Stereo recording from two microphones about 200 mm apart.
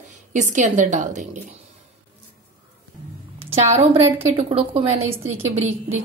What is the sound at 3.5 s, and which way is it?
A woman's voice, 30° right (ahead or behind).